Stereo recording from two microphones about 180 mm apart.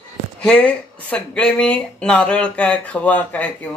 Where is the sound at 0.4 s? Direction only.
5° left (ahead or behind).